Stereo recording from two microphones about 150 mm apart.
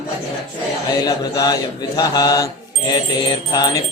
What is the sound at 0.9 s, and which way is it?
Mantra, 25° left (ahead or behind).